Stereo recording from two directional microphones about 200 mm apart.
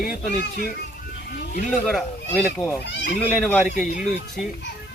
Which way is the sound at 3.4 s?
Centre (ahead or behind).